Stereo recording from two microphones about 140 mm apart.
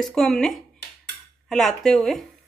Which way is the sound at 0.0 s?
5° left (ahead or behind).